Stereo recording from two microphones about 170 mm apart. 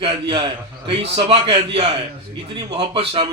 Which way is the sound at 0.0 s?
30° right (ahead or behind).